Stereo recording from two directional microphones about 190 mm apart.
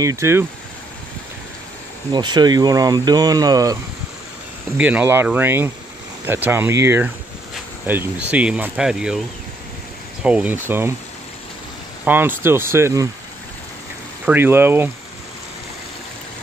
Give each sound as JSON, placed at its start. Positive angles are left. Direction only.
{"t": 0.0, "sound": "speech", "side_deg": -15}
{"t": 2.1, "sound": "speech", "side_deg": -20}
{"t": 4.7, "sound": "speech", "side_deg": -5}
{"t": 10.2, "sound": "speech", "side_deg": -5}
{"t": 12.0, "sound": "speech", "side_deg": -10}
{"t": 14.2, "sound": "speech", "side_deg": -10}